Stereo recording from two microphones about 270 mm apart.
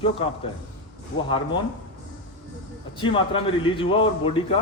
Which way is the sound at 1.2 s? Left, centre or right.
Centre.